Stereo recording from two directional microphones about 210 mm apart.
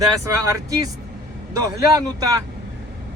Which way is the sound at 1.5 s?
15° right (ahead or behind).